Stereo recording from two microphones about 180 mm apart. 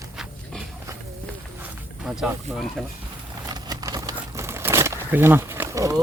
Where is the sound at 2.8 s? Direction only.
Centre (ahead or behind).